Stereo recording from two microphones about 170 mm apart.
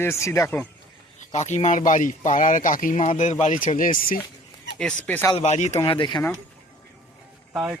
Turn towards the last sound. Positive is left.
turn(degrees=-5)  # may be behind; listen again after turning